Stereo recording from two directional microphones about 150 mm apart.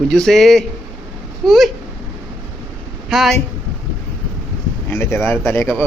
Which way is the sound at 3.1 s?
Centre (ahead or behind).